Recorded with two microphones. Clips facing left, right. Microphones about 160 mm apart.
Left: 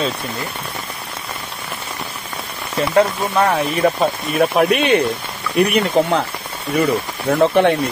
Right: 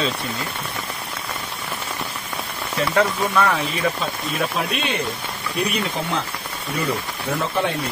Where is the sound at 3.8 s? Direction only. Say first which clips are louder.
Left 7 dB; 60° left (ahead or behind).